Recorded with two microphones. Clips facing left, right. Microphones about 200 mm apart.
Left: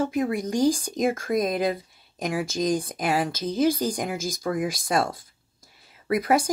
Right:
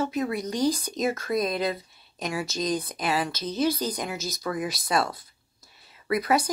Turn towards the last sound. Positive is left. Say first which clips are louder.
# left 2 dB
turn(degrees=45)  # may be behind; listen again after turning